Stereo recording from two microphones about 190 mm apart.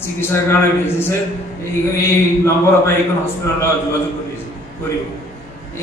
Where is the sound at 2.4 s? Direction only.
15° left (ahead or behind).